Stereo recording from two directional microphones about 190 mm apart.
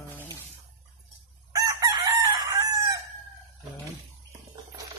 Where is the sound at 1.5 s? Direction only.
20° right (ahead or behind).